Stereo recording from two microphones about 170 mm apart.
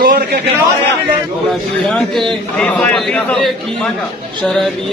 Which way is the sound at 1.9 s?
5° left (ahead or behind).